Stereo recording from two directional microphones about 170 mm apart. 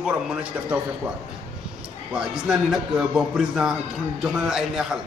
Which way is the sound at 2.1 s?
Centre (ahead or behind).